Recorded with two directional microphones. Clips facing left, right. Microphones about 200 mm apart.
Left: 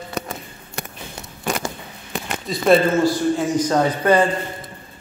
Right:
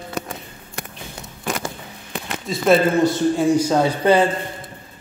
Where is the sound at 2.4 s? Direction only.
Centre (ahead or behind).